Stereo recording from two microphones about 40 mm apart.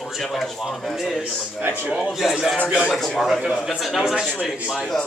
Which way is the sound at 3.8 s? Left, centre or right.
Centre.